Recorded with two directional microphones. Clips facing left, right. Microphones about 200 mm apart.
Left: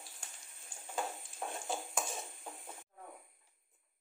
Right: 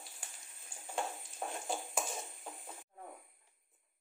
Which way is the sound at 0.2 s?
5° right (ahead or behind).